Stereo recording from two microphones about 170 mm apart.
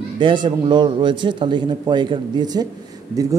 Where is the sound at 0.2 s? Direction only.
30° right (ahead or behind).